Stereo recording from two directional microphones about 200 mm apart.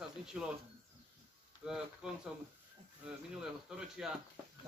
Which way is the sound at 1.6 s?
Centre (ahead or behind).